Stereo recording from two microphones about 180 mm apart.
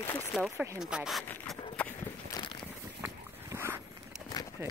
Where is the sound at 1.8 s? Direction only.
5° left (ahead or behind).